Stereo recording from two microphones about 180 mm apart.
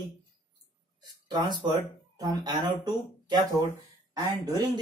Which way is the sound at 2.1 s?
20° right (ahead or behind).